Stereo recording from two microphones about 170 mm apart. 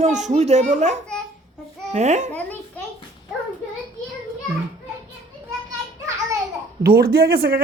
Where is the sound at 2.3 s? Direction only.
10° left (ahead or behind).